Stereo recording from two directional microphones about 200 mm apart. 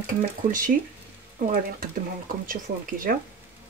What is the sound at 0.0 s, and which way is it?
Speech, 40° right (ahead or behind).